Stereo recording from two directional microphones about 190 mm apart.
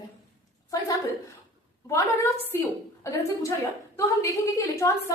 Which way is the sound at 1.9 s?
15° left (ahead or behind).